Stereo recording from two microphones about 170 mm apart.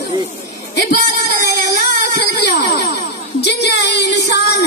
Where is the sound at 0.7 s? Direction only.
75° left (ahead or behind).